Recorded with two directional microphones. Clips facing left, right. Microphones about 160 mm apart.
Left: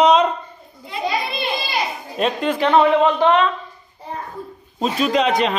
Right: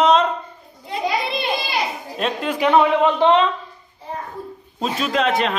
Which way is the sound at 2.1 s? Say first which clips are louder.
Left 4 dB; centre (ahead or behind).